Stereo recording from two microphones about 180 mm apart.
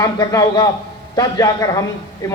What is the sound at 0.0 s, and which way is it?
A man's voice, 20° left (ahead or behind).